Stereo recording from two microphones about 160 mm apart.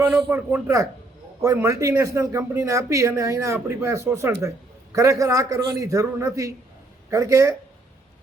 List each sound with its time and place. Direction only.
0.0 s speech: 10° right (ahead or behind)